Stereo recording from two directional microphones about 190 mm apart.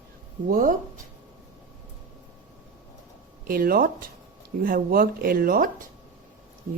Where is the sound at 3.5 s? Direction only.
50° right (ahead or behind).